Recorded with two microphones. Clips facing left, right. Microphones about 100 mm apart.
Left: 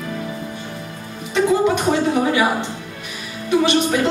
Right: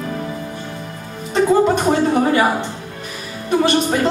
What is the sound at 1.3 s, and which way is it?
Music, 40° right (ahead or behind).